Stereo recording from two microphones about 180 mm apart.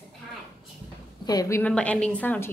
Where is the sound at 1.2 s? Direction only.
20° left (ahead or behind).